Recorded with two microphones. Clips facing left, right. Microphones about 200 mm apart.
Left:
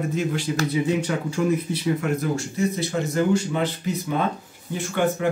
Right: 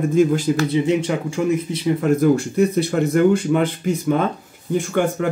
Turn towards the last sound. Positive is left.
turn(degrees=-50)  # may be behind; listen again after turning